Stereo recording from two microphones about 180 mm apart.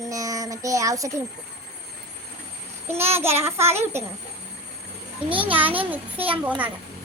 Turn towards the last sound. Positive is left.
turn(degrees=-10)  # may be behind; listen again after turning